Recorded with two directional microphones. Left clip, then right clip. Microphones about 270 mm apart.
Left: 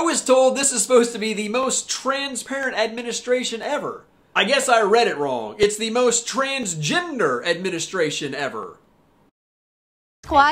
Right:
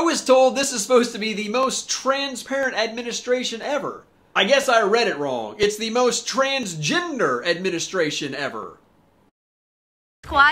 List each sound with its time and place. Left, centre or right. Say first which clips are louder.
0.0 s speech: even; centre
10.2 s speech: even; centre